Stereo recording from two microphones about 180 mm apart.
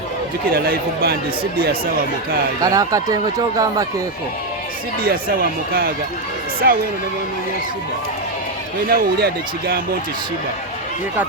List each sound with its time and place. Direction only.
0.5 s speech: 55° right (ahead or behind)
2.6 s speech: 20° right (ahead or behind)
5.0 s speech: 55° right (ahead or behind)
8.9 s speech: 60° right (ahead or behind)